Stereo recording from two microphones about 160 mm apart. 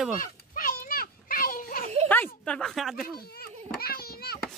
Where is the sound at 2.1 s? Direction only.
10° left (ahead or behind).